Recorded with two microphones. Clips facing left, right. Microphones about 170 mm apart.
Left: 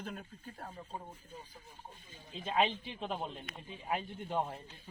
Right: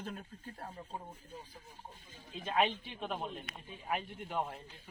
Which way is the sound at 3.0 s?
25° left (ahead or behind).